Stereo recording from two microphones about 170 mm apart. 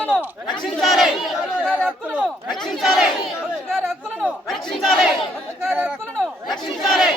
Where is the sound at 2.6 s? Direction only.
Centre (ahead or behind).